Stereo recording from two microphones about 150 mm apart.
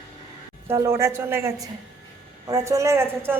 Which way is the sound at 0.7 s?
15° right (ahead or behind).